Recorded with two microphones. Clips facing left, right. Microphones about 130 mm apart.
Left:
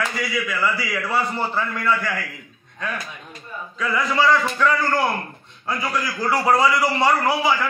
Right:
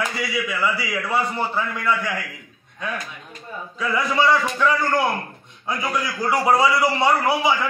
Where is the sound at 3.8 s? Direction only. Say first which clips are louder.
Even; 15° right (ahead or behind).